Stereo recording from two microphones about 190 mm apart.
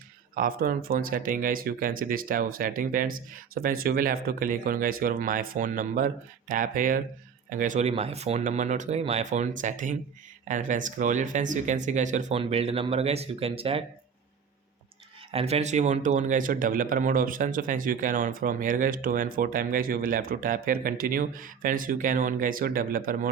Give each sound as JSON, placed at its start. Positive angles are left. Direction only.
{"t": 0.3, "sound": "a man's voice", "side_deg": -50}
{"t": 15.3, "sound": "a man's voice", "side_deg": -30}